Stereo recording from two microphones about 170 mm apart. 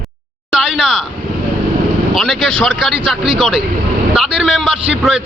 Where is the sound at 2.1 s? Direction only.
Centre (ahead or behind).